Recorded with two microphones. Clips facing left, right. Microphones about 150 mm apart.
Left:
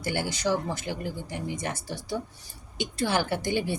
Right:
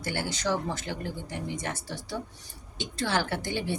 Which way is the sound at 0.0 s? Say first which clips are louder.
Left 2 dB; 15° left (ahead or behind).